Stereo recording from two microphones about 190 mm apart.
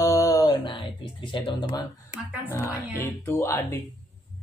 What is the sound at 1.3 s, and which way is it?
Speech, 25° left (ahead or behind).